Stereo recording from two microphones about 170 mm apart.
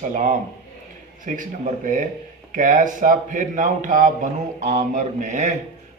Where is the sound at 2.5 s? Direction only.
50° right (ahead or behind).